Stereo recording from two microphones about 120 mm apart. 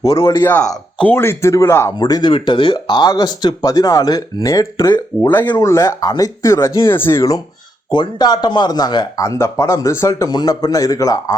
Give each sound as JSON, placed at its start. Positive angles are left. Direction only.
{"t": 0.0, "sound": "speech", "side_deg": 40}
{"t": 0.4, "sound": "speech", "side_deg": 15}
{"t": 2.0, "sound": "speech", "side_deg": 35}
{"t": 5.3, "sound": "speech", "side_deg": 20}